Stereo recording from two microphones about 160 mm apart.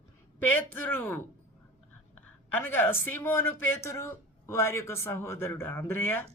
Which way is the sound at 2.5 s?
15° left (ahead or behind).